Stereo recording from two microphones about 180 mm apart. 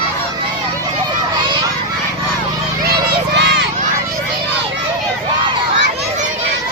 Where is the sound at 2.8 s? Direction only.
60° right (ahead or behind).